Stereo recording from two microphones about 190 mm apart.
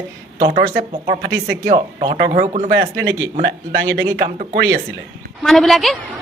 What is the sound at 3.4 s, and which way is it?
Speech, 65° right (ahead or behind).